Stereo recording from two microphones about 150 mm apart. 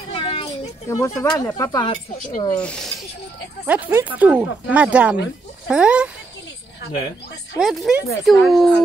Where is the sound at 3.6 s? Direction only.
10° right (ahead or behind).